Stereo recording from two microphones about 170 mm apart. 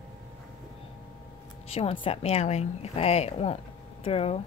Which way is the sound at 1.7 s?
35° left (ahead or behind).